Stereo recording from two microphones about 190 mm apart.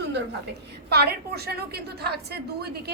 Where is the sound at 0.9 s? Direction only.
55° right (ahead or behind).